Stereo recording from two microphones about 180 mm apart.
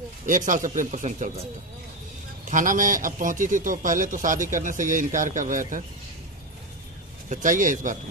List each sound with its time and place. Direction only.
0.3 s a man's voice: 45° right (ahead or behind)
2.5 s a man's voice: 45° right (ahead or behind)
7.2 s a man's voice: 45° right (ahead or behind)